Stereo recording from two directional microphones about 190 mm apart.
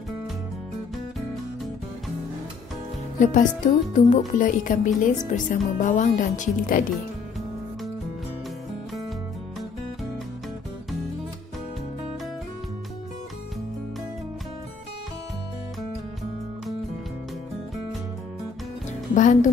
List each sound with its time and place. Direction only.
3.2 s speech: 40° left (ahead or behind)
19.1 s music: 40° left (ahead or behind)